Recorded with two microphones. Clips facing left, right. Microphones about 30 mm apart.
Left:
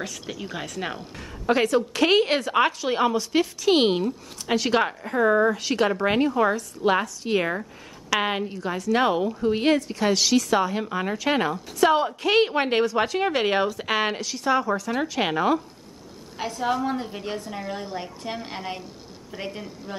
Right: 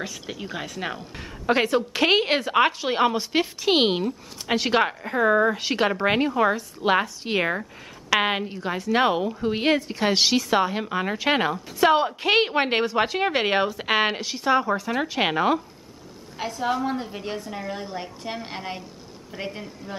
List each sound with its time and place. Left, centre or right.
0.0 s a woman's voice: centre
1.4 s a woman's voice: centre
16.3 s a woman's voice: centre